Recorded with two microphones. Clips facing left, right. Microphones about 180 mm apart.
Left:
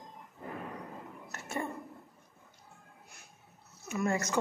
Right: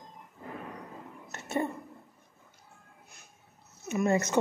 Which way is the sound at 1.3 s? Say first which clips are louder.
Right 6 dB; 20° right (ahead or behind).